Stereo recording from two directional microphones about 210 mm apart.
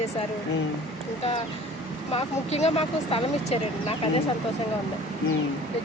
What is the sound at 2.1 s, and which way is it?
Speech, 30° left (ahead or behind).